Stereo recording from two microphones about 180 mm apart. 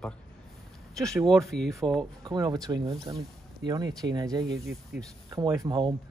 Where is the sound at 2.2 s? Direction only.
20° right (ahead or behind).